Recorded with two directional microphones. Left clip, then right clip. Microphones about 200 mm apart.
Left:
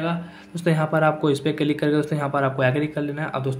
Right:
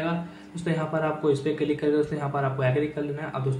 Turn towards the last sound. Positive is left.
turn(degrees=45)  # may be behind; listen again after turning